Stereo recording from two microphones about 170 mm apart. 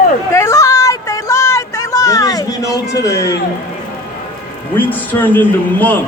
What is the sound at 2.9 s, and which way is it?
Speech, 20° left (ahead or behind).